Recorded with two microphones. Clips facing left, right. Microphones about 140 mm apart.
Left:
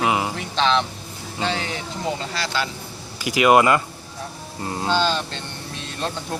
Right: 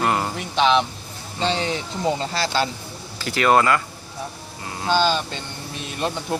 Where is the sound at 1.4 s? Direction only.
25° right (ahead or behind).